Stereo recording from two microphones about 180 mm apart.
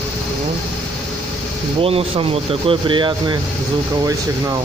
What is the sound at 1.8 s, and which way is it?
Speech, 30° right (ahead or behind).